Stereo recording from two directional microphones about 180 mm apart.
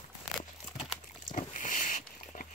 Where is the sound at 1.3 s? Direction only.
45° left (ahead or behind).